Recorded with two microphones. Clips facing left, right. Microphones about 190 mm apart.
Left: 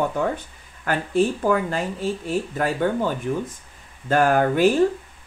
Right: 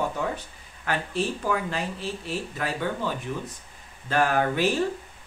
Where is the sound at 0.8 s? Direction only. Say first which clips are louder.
Left 7 dB; 50° left (ahead or behind).